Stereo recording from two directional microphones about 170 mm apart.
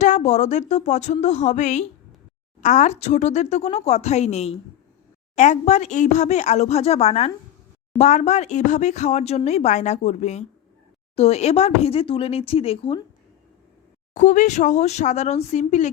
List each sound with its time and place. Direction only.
0.0 s speech: 45° left (ahead or behind)
14.1 s speech: 45° left (ahead or behind)